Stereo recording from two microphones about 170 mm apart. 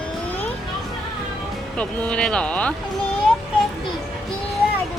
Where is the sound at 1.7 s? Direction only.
5° left (ahead or behind).